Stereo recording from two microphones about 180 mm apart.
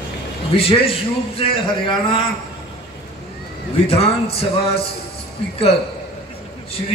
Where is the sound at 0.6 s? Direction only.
30° left (ahead or behind).